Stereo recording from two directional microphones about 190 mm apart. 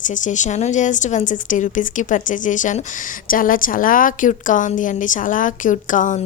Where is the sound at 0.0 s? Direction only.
40° left (ahead or behind).